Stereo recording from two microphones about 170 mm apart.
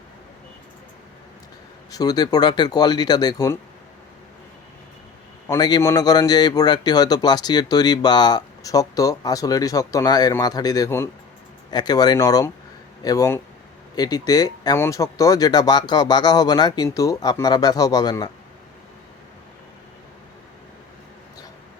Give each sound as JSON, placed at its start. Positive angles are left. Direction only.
{"t": 1.9, "sound": "a man's voice", "side_deg": 20}
{"t": 5.5, "sound": "a man's voice", "side_deg": 25}